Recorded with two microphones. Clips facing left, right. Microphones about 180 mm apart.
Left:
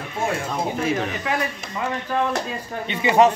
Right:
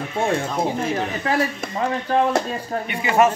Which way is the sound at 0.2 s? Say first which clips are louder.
Right 3 dB; 30° right (ahead or behind).